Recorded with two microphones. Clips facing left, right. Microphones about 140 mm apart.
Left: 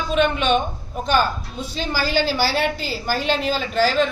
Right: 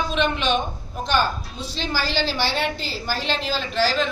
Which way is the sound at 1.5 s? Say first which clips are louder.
Left 2 dB; 5° left (ahead or behind).